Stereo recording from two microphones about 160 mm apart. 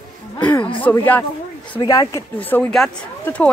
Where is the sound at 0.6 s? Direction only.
30° left (ahead or behind).